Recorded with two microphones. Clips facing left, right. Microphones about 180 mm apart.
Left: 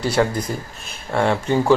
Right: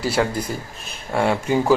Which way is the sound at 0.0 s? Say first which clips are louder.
Left 2 dB; 5° right (ahead or behind).